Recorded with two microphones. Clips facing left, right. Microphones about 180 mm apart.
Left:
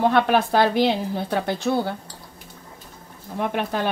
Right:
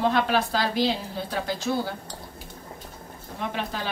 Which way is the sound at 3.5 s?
55° left (ahead or behind).